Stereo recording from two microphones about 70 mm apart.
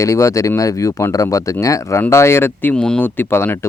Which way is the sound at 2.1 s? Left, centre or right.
Left.